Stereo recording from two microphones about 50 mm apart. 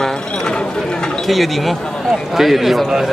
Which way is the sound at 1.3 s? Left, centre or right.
Centre.